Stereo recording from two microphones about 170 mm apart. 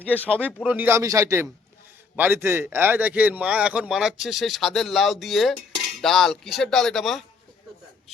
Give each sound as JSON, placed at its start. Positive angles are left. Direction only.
{"t": 0.6, "sound": "a man's voice", "side_deg": -10}